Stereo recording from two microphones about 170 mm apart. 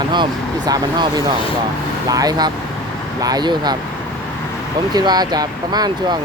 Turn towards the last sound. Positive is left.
turn(degrees=-25)  # may be behind; listen again after turning